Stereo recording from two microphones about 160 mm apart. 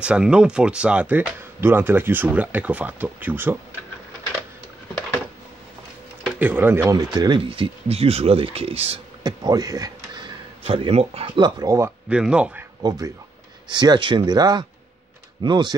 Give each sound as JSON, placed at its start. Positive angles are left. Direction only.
{"t": 0.0, "sound": "speech", "side_deg": -5}
{"t": 6.2, "sound": "speech", "side_deg": -10}
{"t": 7.2, "sound": "speech", "side_deg": -30}
{"t": 9.2, "sound": "speech", "side_deg": -25}
{"t": 12.1, "sound": "speech", "side_deg": -5}
{"t": 12.8, "sound": "speech", "side_deg": -25}